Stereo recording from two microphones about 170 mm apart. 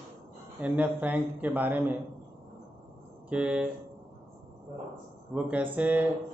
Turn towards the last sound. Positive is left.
turn(degrees=-10)  # may be behind; listen again after turning